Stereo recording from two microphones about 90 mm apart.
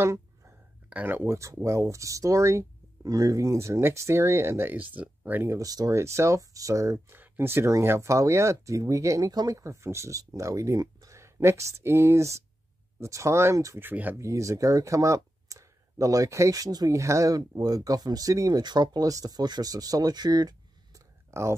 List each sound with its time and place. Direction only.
0.8 s speech: 20° right (ahead or behind)
5.7 s speech: 40° right (ahead or behind)
13.7 s speech: 20° right (ahead or behind)
14.1 s speech: 35° right (ahead or behind)
21.3 s speech: 30° right (ahead or behind)